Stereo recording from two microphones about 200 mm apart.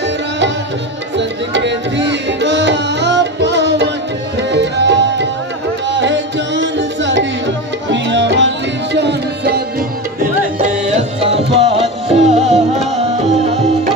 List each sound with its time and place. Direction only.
1.1 s tabla: 60° right (ahead or behind)
5.9 s music: 60° right (ahead or behind)
11.0 s music: 30° right (ahead or behind)